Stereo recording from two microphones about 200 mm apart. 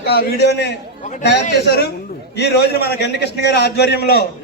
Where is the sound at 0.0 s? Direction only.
55° left (ahead or behind).